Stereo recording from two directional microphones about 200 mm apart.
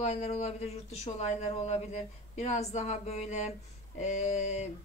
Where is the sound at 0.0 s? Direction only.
35° left (ahead or behind).